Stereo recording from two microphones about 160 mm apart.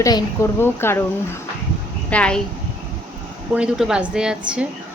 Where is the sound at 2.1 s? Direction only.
5° left (ahead or behind).